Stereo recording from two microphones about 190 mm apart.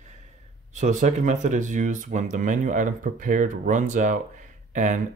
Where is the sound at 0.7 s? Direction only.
40° right (ahead or behind).